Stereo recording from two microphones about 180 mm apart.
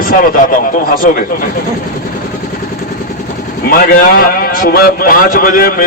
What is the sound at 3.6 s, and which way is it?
A man's voice, 50° left (ahead or behind).